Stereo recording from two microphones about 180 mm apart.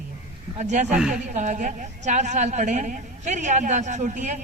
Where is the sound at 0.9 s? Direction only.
5° right (ahead or behind).